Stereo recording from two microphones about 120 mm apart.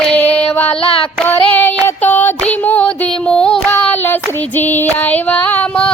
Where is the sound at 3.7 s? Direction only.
15° left (ahead or behind).